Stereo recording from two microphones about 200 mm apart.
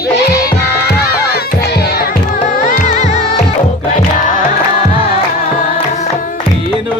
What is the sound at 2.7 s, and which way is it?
Music, 35° left (ahead or behind).